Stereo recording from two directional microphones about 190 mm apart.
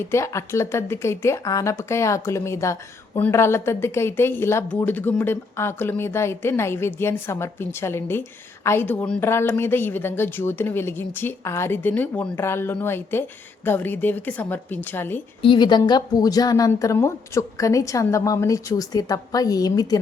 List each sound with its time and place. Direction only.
0.0 s a woman's voice: 15° left (ahead or behind)
15.4 s a woman's voice: 25° left (ahead or behind)